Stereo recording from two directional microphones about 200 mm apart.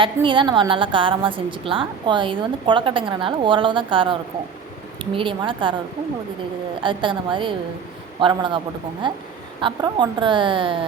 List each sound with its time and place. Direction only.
0.0 s a woman's voice: 25° right (ahead or behind)
6.8 s a woman's voice: 25° right (ahead or behind)